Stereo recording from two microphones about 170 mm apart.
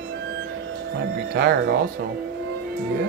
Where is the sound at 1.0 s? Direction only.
70° right (ahead or behind).